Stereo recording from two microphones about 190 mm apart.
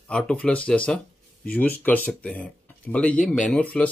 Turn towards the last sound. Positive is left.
turn(degrees=5)  # may be behind; listen again after turning